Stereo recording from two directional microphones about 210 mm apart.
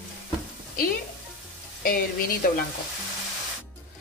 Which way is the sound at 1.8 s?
45° left (ahead or behind).